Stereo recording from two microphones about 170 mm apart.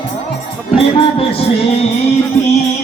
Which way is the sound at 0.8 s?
30° left (ahead or behind).